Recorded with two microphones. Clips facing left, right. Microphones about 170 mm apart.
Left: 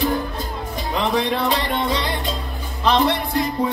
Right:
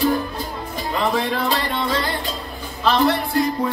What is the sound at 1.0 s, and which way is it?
Music, 20° left (ahead or behind).